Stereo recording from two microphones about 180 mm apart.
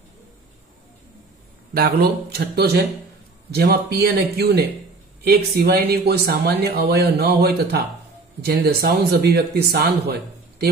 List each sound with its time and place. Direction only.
1.7 s speech: 60° right (ahead or behind)